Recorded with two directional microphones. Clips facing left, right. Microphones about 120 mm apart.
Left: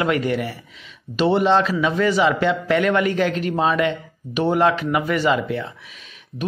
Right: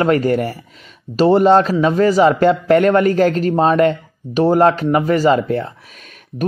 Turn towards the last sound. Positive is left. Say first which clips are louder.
# right 6 dB
turn(degrees=-40)  # may be behind; listen again after turning